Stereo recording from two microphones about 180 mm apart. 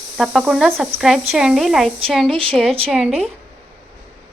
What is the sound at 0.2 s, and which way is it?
Speech, centre (ahead or behind).